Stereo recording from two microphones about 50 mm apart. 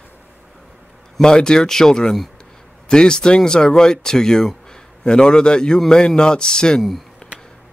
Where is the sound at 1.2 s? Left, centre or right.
Centre.